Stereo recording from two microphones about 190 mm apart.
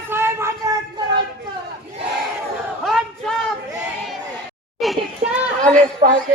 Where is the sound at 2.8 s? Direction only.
Centre (ahead or behind).